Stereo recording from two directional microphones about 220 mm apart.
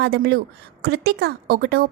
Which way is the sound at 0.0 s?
45° right (ahead or behind).